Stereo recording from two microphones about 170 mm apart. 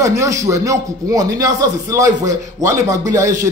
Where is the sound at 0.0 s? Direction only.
20° right (ahead or behind).